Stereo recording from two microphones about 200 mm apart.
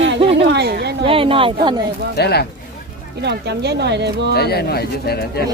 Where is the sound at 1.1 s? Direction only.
25° right (ahead or behind).